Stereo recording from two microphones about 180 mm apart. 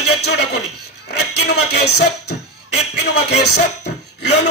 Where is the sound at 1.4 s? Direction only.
65° left (ahead or behind).